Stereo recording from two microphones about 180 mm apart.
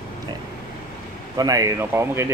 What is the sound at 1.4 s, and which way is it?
Speech, 20° right (ahead or behind).